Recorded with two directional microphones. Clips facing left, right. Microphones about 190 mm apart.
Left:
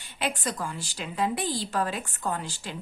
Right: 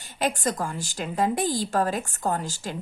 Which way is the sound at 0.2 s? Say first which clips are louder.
Right 5 dB; 45° right (ahead or behind).